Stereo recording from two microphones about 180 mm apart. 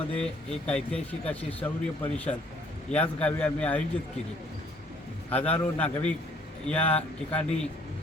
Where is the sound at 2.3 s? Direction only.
25° left (ahead or behind).